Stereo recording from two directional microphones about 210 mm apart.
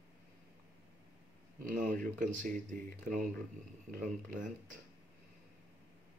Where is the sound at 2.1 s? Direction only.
40° right (ahead or behind).